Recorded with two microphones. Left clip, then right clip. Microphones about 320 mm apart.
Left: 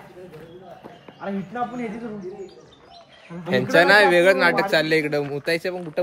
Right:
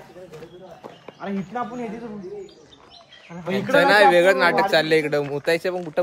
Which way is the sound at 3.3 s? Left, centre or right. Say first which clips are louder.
Left 1 dB; right.